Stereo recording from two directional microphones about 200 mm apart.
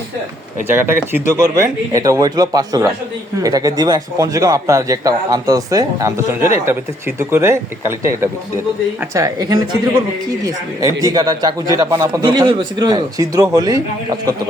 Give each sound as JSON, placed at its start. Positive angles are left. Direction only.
{"t": 0.7, "sound": "a man's voice", "side_deg": -10}